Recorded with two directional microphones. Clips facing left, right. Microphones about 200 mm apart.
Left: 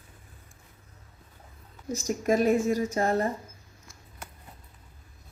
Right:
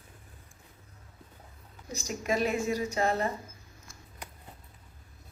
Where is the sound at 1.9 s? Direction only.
45° left (ahead or behind).